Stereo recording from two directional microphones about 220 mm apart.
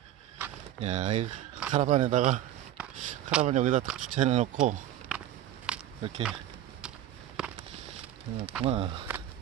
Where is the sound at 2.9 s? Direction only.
35° right (ahead or behind).